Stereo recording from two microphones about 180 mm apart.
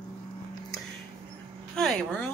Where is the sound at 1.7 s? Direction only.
Centre (ahead or behind).